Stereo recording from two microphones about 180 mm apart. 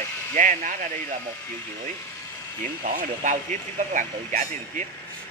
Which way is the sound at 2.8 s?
45° right (ahead or behind).